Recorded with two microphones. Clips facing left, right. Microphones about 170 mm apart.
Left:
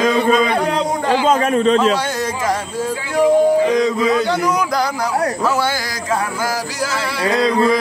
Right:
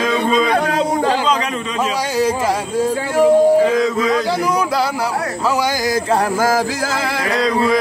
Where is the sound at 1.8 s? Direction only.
10° right (ahead or behind).